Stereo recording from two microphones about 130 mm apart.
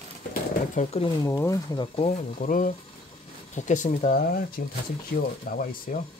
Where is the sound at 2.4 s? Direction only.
90° left.